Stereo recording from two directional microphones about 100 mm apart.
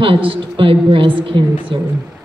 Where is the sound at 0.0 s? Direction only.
65° right (ahead or behind).